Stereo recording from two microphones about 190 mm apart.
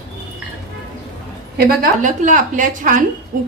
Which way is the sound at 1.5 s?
45° right (ahead or behind).